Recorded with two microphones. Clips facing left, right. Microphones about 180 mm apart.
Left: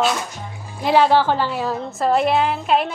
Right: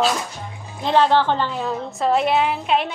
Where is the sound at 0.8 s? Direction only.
10° left (ahead or behind).